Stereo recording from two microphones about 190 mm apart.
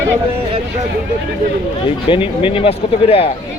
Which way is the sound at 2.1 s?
25° left (ahead or behind).